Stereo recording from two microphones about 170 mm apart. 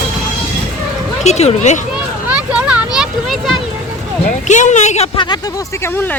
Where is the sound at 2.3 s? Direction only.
5° right (ahead or behind).